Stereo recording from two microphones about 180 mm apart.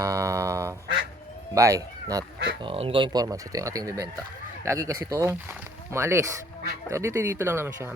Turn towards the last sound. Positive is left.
turn(degrees=-10)  # may be behind; listen again after turning